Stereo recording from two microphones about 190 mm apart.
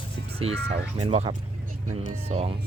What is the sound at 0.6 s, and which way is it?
Speech, 55° right (ahead or behind).